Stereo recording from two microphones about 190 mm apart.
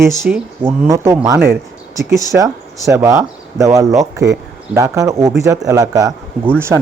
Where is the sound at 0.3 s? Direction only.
5° right (ahead or behind).